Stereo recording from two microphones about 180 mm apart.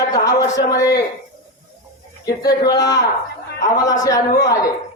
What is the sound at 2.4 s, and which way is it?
Speech, 20° left (ahead or behind).